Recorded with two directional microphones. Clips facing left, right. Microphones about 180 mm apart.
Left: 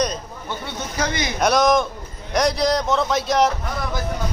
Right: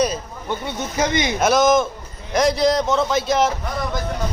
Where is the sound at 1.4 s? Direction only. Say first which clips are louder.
Right 1 dB; centre (ahead or behind).